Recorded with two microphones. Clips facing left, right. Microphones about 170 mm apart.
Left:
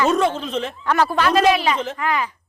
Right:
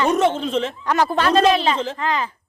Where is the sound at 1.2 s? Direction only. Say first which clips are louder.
Right 1 dB; 30° right (ahead or behind).